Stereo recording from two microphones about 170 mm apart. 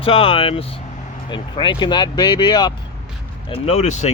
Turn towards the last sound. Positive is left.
turn(degrees=40)  # may be behind; listen again after turning